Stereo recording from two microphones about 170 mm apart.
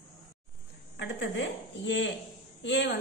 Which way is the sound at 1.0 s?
90° left.